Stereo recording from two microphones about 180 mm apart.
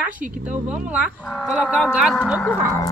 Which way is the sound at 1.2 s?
10° left (ahead or behind).